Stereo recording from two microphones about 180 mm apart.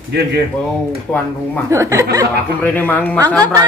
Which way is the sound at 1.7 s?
15° right (ahead or behind).